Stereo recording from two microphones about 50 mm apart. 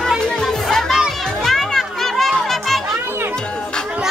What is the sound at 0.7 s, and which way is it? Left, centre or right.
Children playing, centre.